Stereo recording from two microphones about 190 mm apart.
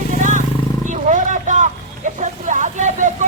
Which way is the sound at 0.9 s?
40° right (ahead or behind).